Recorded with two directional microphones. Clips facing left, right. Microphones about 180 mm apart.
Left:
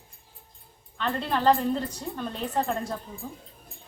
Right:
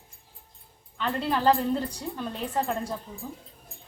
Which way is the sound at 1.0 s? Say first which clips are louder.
Even; 10° right (ahead or behind).